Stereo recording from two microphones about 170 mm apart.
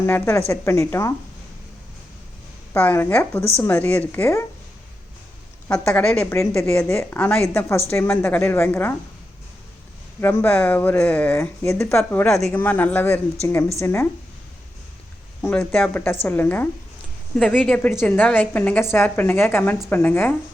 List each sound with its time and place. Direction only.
0.0 s speech: 15° left (ahead or behind)
2.7 s speech: 10° left (ahead or behind)
5.6 s speech: 5° left (ahead or behind)
10.2 s speech: 10° left (ahead or behind)
15.4 s speech: 10° left (ahead or behind)